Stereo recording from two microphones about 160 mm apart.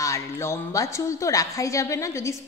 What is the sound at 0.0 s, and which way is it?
A woman's voice, 20° left (ahead or behind).